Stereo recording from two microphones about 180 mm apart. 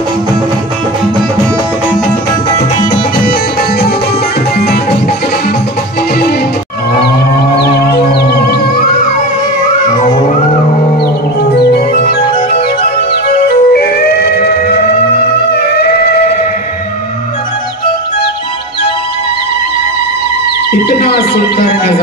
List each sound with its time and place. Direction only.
7.8 s music: 60° left (ahead or behind)
11.5 s music: 60° left (ahead or behind)
13.5 s music: 60° left (ahead or behind)